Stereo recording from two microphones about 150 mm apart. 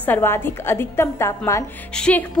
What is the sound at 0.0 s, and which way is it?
A woman's voice, 15° left (ahead or behind).